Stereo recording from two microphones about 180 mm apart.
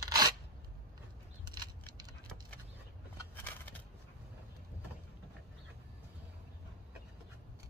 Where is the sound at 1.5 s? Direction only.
20° right (ahead or behind).